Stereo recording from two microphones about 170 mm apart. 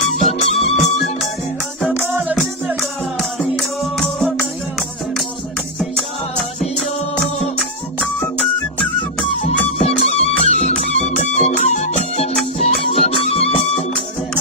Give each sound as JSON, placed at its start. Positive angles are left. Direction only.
{"t": 0.1, "sound": "music", "side_deg": 35}
{"t": 2.8, "sound": "music", "side_deg": 0}
{"t": 9.8, "sound": "music", "side_deg": 40}